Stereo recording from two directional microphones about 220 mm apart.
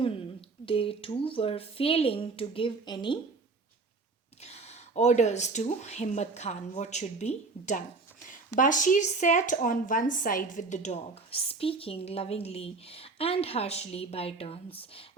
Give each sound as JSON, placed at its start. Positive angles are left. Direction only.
{"t": 0.6, "sound": "speech", "side_deg": 25}
{"t": 4.4, "sound": "speech", "side_deg": 30}